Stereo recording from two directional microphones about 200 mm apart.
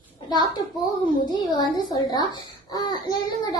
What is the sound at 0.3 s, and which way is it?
A child's voice, 20° left (ahead or behind).